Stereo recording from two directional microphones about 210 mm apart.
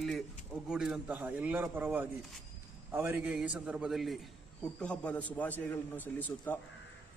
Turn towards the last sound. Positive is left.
turn(degrees=10)  # may be behind; listen again after turning